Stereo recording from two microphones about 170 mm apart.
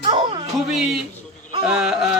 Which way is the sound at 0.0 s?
30° right (ahead or behind).